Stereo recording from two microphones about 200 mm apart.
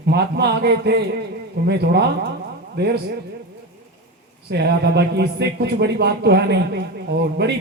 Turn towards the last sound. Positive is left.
turn(degrees=-55)  # may be behind; listen again after turning